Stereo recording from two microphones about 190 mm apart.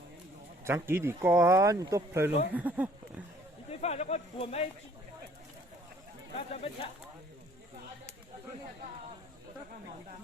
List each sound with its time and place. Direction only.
0.6 s speech: 10° right (ahead or behind)
3.7 s speech: 35° left (ahead or behind)
6.3 s speech: 30° left (ahead or behind)